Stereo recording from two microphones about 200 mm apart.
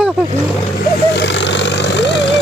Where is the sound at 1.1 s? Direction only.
60° left (ahead or behind).